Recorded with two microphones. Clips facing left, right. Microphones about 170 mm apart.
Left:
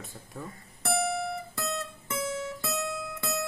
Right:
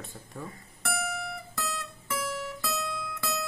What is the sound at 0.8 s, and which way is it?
Music, 30° left (ahead or behind).